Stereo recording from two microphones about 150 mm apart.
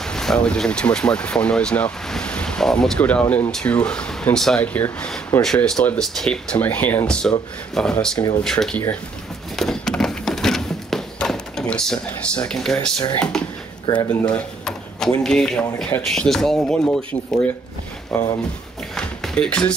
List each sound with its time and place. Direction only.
0.0 s speech: 5° left (ahead or behind)
9.6 s a sound: 5° left (ahead or behind)
12.4 s speech: 5° left (ahead or behind)
13.8 s speech: 30° left (ahead or behind)
14.3 s speech: 5° left (ahead or behind)
18.9 s a sound: 5° left (ahead or behind)